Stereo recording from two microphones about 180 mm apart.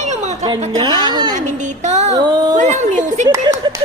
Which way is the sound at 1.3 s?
40° right (ahead or behind).